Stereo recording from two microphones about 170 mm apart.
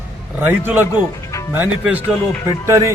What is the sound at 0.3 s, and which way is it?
A man's voice, 10° right (ahead or behind).